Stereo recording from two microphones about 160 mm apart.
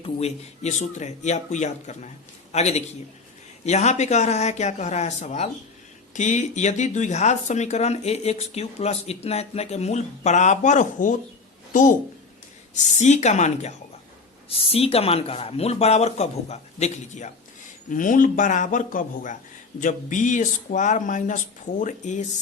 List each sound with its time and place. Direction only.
0.0 s a woman's voice: 40° left (ahead or behind)